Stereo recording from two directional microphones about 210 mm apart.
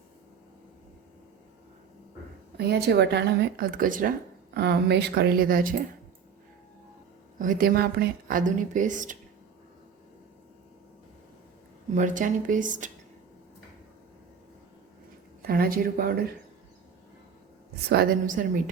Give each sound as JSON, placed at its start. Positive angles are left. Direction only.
{"t": 2.6, "sound": "speech", "side_deg": -50}
{"t": 4.5, "sound": "speech", "side_deg": -50}
{"t": 7.3, "sound": "speech", "side_deg": -40}
{"t": 11.9, "sound": "speech", "side_deg": -40}
{"t": 15.4, "sound": "speech", "side_deg": -45}
{"t": 17.8, "sound": "speech", "side_deg": -45}